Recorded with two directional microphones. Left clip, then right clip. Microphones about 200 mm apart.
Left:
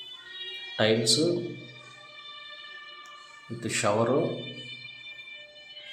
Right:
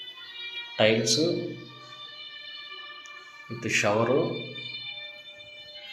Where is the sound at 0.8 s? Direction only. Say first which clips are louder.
Right 2 dB; 20° left (ahead or behind).